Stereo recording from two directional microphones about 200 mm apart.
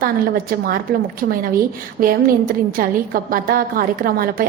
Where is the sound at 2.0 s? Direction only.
45° right (ahead or behind).